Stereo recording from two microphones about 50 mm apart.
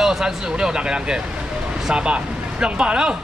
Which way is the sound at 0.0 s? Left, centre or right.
Centre.